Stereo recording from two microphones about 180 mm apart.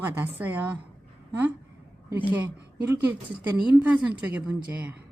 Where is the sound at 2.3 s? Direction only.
10° right (ahead or behind).